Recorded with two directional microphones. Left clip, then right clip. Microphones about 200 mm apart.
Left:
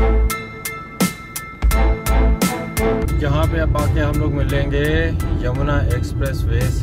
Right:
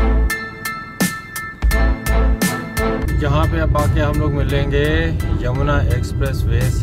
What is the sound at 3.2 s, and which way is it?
Music, 20° right (ahead or behind).